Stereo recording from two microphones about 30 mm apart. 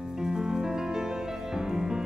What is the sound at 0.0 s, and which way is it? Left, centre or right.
Music, right.